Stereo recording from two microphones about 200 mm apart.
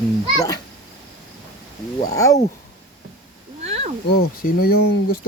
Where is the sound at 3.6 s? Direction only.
30° right (ahead or behind).